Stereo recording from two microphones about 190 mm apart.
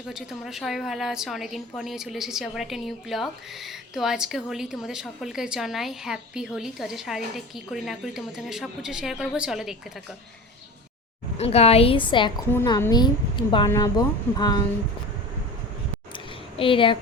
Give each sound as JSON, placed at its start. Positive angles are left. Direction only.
{"t": 0.1, "sound": "a woman's voice", "side_deg": 0}
{"t": 11.3, "sound": "a woman's voice", "side_deg": 35}
{"t": 16.1, "sound": "a sound", "side_deg": 25}